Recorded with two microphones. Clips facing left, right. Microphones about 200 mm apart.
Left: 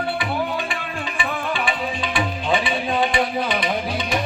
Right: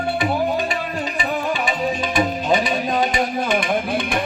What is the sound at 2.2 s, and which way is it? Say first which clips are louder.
Music: right 3 dB; 40° right (ahead or behind).